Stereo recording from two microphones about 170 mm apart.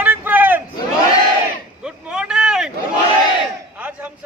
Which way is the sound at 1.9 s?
5° right (ahead or behind).